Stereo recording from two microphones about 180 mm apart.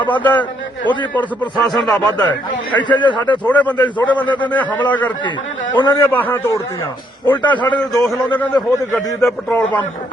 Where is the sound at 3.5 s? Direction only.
10° left (ahead or behind).